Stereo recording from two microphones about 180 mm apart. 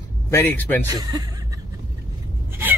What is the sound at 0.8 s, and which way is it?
Speech, 20° right (ahead or behind).